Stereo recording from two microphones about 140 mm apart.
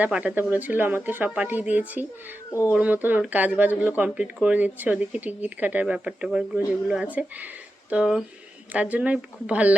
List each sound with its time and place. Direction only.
0.0 s speech: 10° right (ahead or behind)